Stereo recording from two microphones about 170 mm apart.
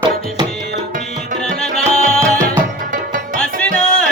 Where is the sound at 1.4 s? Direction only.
5° left (ahead or behind).